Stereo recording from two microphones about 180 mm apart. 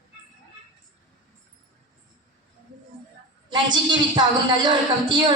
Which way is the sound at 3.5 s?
25° right (ahead or behind).